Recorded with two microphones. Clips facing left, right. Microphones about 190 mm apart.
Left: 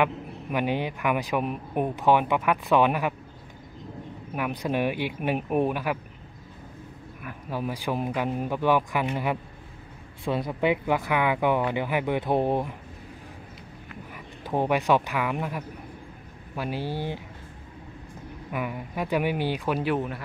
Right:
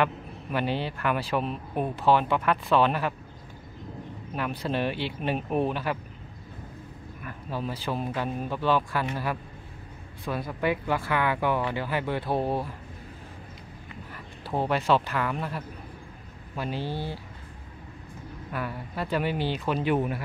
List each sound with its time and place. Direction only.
0.0 s a man's voice: 15° left (ahead or behind)
4.3 s a man's voice: 15° left (ahead or behind)
7.2 s a man's voice: 10° left (ahead or behind)
14.1 s a man's voice: 15° left (ahead or behind)
18.5 s a man's voice: 15° left (ahead or behind)